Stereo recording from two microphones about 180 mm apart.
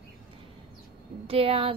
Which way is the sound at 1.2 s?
30° right (ahead or behind).